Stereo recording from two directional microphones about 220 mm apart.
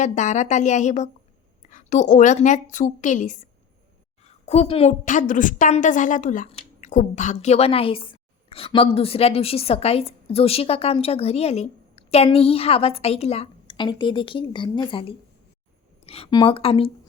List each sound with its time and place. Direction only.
0.0 s a woman's voice: 35° left (ahead or behind)